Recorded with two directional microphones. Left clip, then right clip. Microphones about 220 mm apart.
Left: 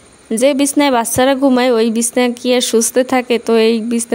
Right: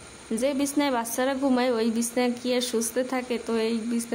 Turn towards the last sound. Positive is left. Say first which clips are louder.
# left 14 dB
turn(degrees=40)  # may be behind; listen again after turning